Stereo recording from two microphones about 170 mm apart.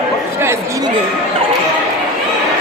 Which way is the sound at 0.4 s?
15° right (ahead or behind).